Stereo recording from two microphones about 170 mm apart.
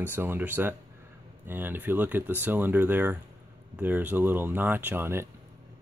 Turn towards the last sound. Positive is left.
turn(degrees=-15)  # may be behind; listen again after turning